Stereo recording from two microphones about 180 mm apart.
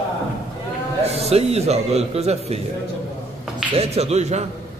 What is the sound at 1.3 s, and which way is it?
A man's voice, 35° right (ahead or behind).